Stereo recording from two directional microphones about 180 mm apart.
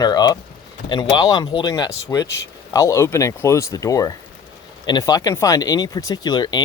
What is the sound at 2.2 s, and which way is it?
Speech, 75° left (ahead or behind).